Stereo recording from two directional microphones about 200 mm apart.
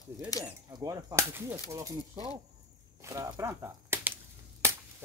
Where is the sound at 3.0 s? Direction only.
15° right (ahead or behind).